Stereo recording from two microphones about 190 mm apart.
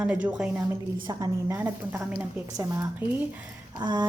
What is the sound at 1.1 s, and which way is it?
Speech, 20° right (ahead or behind).